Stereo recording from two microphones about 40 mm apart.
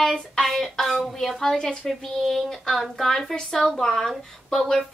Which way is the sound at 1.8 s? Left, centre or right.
Centre.